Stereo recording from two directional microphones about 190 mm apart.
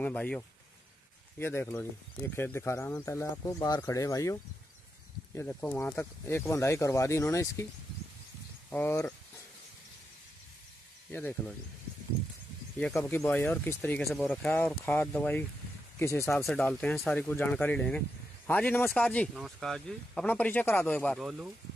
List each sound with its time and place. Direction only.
0.0 s speech: 5° left (ahead or behind)
8.6 s speech: 10° left (ahead or behind)
11.1 s speech: 10° left (ahead or behind)
12.7 s speech: 10° left (ahead or behind)